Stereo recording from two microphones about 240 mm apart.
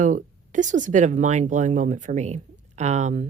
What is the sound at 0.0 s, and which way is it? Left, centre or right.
Speech, right.